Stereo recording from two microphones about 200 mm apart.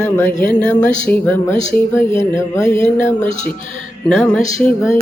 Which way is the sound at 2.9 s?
40° left (ahead or behind).